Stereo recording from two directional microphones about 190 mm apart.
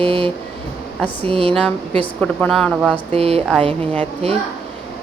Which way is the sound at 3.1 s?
30° right (ahead or behind).